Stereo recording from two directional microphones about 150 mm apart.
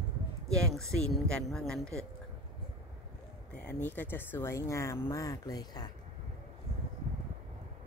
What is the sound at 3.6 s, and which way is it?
Speech, 10° left (ahead or behind).